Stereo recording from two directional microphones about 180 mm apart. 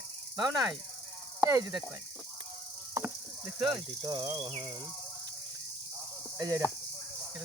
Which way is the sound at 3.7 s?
25° right (ahead or behind).